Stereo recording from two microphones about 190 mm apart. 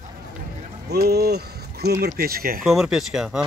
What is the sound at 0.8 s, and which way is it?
Speech, 55° right (ahead or behind).